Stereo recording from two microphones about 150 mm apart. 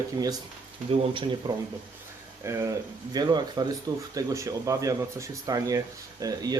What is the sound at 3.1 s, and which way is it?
Speech, 30° right (ahead or behind).